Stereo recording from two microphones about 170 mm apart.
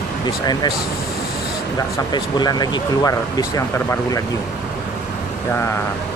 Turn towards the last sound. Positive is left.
turn(degrees=20)  # may be behind; listen again after turning